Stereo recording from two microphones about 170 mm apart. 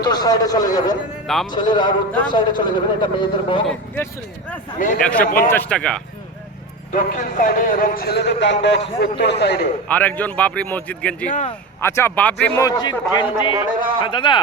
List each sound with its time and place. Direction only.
0.0 s a man's voice: 25° left (ahead or behind)
3.7 s a man's voice: 10° left (ahead or behind)
4.8 s a man's voice: 55° left (ahead or behind)
5.0 s a man's voice: 5° left (ahead or behind)
6.9 s a man's voice: 50° left (ahead or behind); by 9.6 s 80° left
9.9 s a man's voice: 10° left (ahead or behind)
12.6 s a man's voice: 25° left (ahead or behind)